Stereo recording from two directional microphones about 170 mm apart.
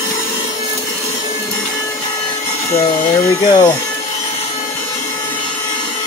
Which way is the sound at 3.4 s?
25° left (ahead or behind).